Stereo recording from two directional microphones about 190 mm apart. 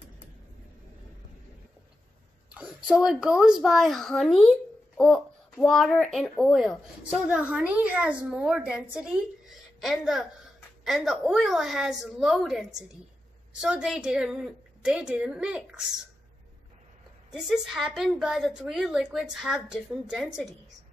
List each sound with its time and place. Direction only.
2.5 s a child's voice: 5° right (ahead or behind)
17.3 s a child's voice: centre (ahead or behind)